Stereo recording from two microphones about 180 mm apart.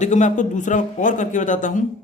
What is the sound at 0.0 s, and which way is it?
A man's voice, 40° left (ahead or behind).